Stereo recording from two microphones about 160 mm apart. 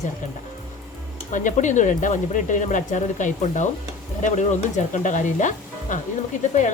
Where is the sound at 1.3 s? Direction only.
50° left (ahead or behind).